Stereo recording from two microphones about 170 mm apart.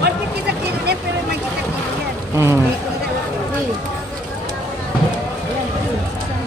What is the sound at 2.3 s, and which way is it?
Speech, 15° right (ahead or behind).